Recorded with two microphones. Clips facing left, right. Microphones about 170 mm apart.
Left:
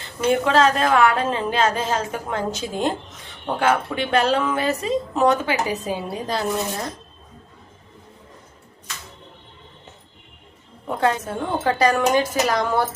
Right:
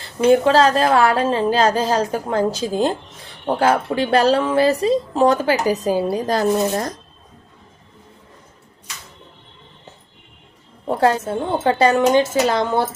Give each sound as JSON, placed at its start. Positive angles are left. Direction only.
{"t": 0.0, "sound": "a woman's voice", "side_deg": -35}
{"t": 10.8, "sound": "a woman's voice", "side_deg": -35}